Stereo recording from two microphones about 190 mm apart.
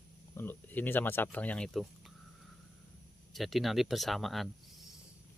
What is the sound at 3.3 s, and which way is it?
Speech, centre (ahead or behind).